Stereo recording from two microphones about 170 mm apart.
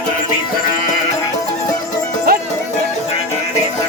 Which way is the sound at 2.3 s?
65° right (ahead or behind).